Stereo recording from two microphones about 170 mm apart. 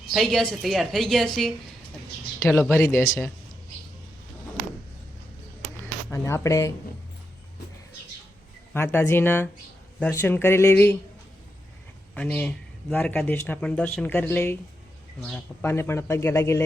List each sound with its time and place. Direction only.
0.1 s a woman's voice: centre (ahead or behind)
2.4 s speech: 15° left (ahead or behind)
6.1 s speech: 15° left (ahead or behind)
8.7 s speech: 10° left (ahead or behind)
12.1 s speech: 10° left (ahead or behind)
15.6 s speech: 15° left (ahead or behind)